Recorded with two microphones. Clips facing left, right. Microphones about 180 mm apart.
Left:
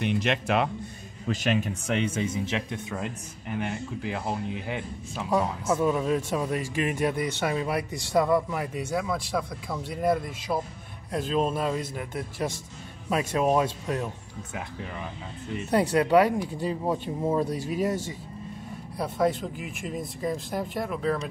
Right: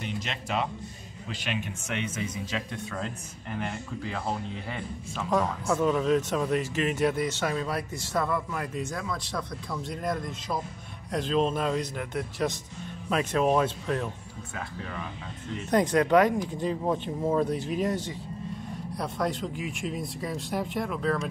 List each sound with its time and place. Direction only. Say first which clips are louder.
0.0 s speech: left 9 dB; 65° left (ahead or behind)
1.2 s speech: left 7 dB; 45° left (ahead or behind); by 14.6 s 15° left (ahead or behind)
15.7 s speech: left 1 dB; 10° left (ahead or behind)